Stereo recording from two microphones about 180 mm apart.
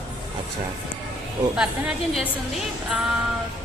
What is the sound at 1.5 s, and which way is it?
Speech, 5° right (ahead or behind).